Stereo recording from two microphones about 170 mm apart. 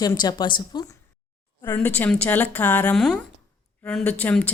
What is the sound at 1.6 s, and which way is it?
Speech, 10° left (ahead or behind).